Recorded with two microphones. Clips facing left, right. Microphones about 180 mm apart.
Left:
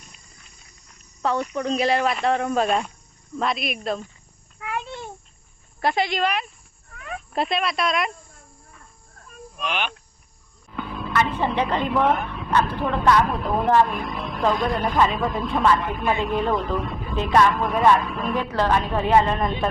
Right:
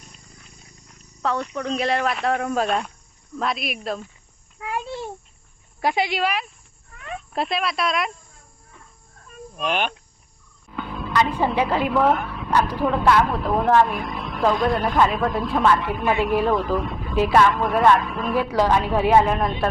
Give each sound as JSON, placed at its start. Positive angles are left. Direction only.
{"t": 1.2, "sound": "speech", "side_deg": 5}
{"t": 4.6, "sound": "a sound", "side_deg": -25}
{"t": 5.8, "sound": "speech", "side_deg": -10}
{"t": 9.6, "sound": "speech", "side_deg": -45}
{"t": 11.1, "sound": "speech", "side_deg": -15}